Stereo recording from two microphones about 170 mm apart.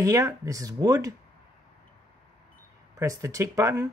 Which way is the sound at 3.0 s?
20° right (ahead or behind).